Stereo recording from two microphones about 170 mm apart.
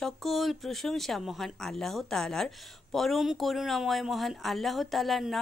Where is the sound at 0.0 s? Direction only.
Centre (ahead or behind).